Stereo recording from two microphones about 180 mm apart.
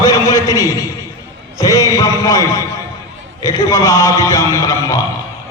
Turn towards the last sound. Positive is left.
turn(degrees=20)  # may be behind; listen again after turning